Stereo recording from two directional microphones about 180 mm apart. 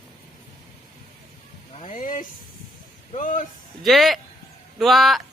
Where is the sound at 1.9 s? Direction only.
45° left (ahead or behind).